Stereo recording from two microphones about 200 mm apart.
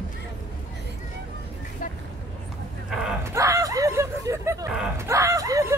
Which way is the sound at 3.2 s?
15° right (ahead or behind).